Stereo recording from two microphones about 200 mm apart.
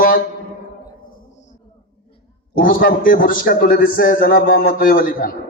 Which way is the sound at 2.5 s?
45° left (ahead or behind).